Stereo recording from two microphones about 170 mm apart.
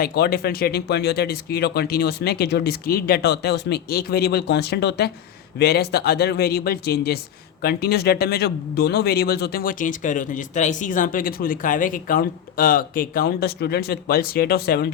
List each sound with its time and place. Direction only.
0.0 s a man's voice: 70° left (ahead or behind)